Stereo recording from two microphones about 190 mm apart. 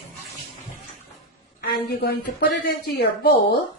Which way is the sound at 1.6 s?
55° left (ahead or behind).